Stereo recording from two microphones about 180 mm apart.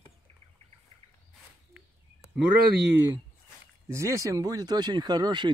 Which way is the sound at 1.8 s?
5° right (ahead or behind).